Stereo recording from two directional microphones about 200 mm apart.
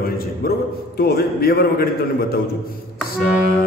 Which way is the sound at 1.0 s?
50° left (ahead or behind).